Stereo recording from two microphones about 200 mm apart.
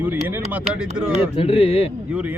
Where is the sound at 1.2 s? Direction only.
25° left (ahead or behind).